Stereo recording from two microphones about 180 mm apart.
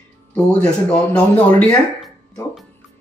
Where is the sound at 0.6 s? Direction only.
5° left (ahead or behind).